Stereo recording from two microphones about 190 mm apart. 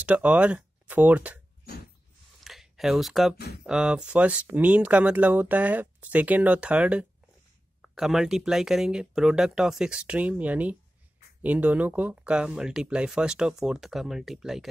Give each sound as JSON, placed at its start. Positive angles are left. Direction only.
{"t": 0.0, "sound": "speech", "side_deg": -5}
{"t": 2.4, "sound": "a sound", "side_deg": 0}
{"t": 3.3, "sound": "speech", "side_deg": 60}
{"t": 3.6, "sound": "speech", "side_deg": -5}